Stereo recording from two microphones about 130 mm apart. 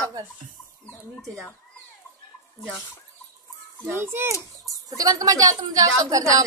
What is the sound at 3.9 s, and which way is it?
A woman's voice, 20° right (ahead or behind).